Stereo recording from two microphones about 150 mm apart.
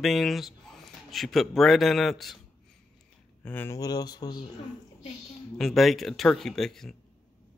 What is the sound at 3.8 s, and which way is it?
Speech, 25° left (ahead or behind).